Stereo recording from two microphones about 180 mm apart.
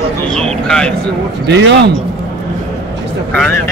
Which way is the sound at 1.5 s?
80° right.